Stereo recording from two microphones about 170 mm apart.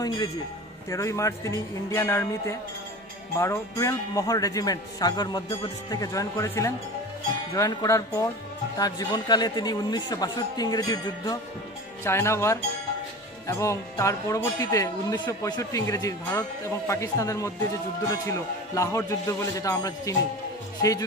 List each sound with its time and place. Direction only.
0.8 s a man's voice: 20° left (ahead or behind)